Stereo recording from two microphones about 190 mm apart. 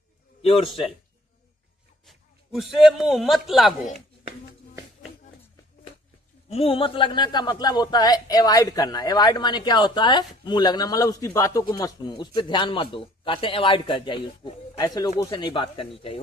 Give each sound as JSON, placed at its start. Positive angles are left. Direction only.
{"t": 0.4, "sound": "a man's voice", "side_deg": 30}
{"t": 2.0, "sound": "a man's voice", "side_deg": 0}
{"t": 6.5, "sound": "a man's voice", "side_deg": 30}